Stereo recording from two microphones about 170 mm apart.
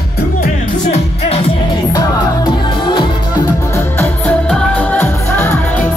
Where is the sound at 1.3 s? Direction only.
35° left (ahead or behind).